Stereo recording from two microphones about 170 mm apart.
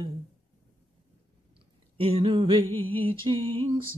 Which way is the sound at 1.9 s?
35° right (ahead or behind).